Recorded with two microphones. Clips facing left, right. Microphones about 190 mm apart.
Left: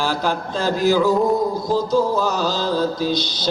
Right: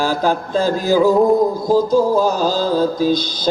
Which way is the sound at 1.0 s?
50° right (ahead or behind).